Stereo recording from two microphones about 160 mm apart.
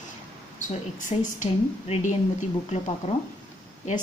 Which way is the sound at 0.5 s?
55° left (ahead or behind).